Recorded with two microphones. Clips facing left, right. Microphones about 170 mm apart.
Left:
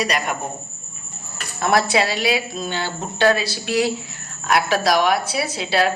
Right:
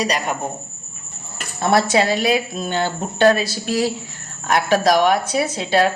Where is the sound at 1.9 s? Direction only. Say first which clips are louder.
Right 3 dB; 45° right (ahead or behind).